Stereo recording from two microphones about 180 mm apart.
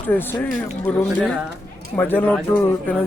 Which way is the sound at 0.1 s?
10° left (ahead or behind).